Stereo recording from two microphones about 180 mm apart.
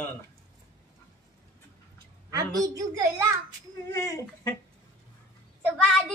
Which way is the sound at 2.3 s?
20° right (ahead or behind).